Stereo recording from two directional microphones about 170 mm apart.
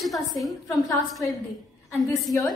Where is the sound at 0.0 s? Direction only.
Centre (ahead or behind).